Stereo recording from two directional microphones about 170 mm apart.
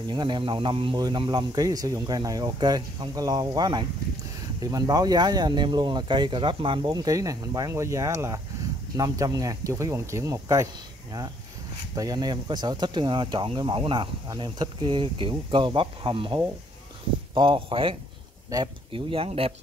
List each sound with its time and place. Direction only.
0.1 s speech: 25° right (ahead or behind)
11.9 s speech: 20° right (ahead or behind)